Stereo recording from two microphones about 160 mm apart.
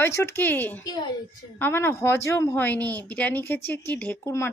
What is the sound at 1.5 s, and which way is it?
Speech, 15° left (ahead or behind).